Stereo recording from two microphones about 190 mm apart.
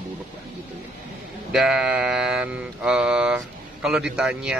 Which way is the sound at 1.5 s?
5° right (ahead or behind).